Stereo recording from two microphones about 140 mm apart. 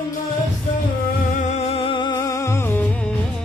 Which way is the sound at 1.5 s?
50° left (ahead or behind).